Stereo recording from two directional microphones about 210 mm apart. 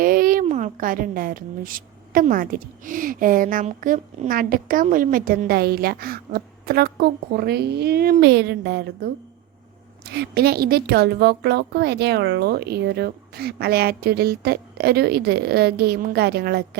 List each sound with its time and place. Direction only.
0.0 s a woman's voice: 45° right (ahead or behind)